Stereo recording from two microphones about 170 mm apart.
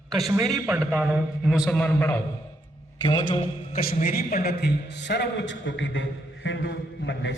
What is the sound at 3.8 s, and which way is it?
A man's voice, 55° left (ahead or behind).